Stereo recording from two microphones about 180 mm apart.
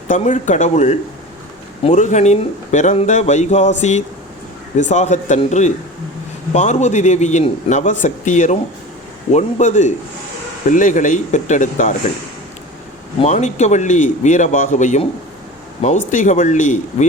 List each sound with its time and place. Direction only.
0.1 s a man's voice: 45° left (ahead or behind)
13.2 s a man's voice: 40° left (ahead or behind)
16.1 s speech: 45° left (ahead or behind)